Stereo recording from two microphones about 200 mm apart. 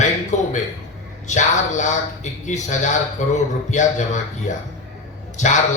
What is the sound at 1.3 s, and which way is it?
A man's voice, 35° left (ahead or behind).